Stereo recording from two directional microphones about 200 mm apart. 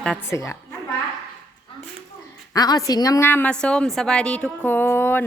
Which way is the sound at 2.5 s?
20° left (ahead or behind).